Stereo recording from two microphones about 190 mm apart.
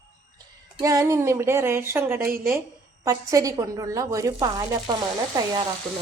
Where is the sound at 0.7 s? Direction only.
15° right (ahead or behind).